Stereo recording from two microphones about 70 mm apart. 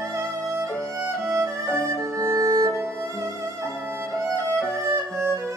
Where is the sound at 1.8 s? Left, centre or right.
Right.